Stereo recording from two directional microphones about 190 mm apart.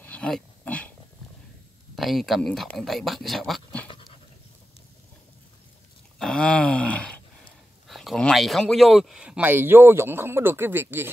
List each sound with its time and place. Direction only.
0.0 s dog: 5° left (ahead or behind)
2.0 s speech: centre (ahead or behind)
3.9 s dog: 25° left (ahead or behind)
6.1 s a sound: 5° left (ahead or behind)
7.9 s speech: centre (ahead or behind)